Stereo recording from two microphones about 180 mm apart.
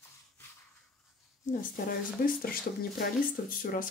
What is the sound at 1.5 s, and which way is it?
Speech, 50° left (ahead or behind).